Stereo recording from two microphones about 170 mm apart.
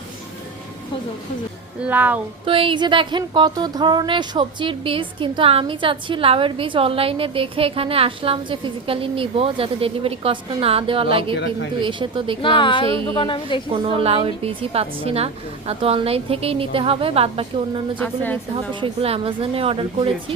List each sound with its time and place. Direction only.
1.8 s speech: 10° right (ahead or behind)
2.4 s speech: 30° right (ahead or behind)
11.3 s a woman's voice: 90° left
11.8 s speech: 30° right (ahead or behind)
12.4 s a woman's voice: 30° left (ahead or behind)
13.7 s speech: 30° right (ahead or behind)
17.9 s a woman's voice: 10° left (ahead or behind)
18.5 s speech: 30° right (ahead or behind)